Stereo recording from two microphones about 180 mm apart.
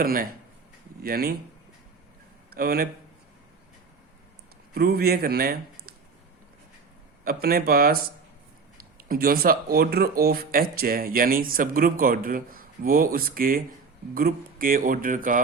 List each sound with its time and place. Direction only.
0.0 s speech: 55° right (ahead or behind)
2.5 s speech: 55° right (ahead or behind)
4.7 s speech: 60° right (ahead or behind)
7.3 s speech: 60° right (ahead or behind)
9.0 s speech: 55° right (ahead or behind)